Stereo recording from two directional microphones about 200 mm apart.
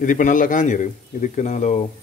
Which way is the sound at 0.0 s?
40° left (ahead or behind).